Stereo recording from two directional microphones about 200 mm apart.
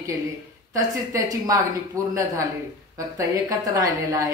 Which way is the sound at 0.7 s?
20° right (ahead or behind).